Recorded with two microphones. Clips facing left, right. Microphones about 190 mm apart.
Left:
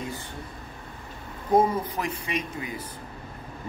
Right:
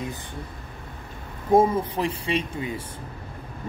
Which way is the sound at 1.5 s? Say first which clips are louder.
Right 3 dB; 25° right (ahead or behind).